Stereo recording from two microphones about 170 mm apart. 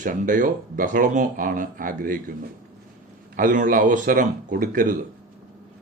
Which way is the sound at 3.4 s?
50° right (ahead or behind).